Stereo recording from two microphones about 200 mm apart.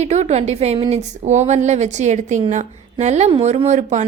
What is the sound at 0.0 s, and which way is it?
A woman's voice, 35° right (ahead or behind).